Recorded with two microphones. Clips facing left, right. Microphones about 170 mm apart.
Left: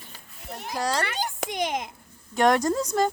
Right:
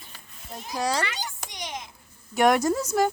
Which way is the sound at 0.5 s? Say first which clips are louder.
Left 1 dB; 65° left (ahead or behind).